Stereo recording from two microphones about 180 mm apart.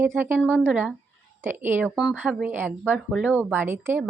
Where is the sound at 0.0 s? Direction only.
10° right (ahead or behind).